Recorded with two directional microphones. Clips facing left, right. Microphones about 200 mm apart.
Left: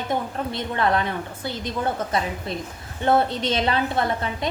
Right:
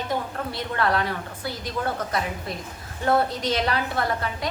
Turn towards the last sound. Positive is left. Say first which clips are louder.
# left 2 dB
turn(degrees=20)  # may be behind; listen again after turning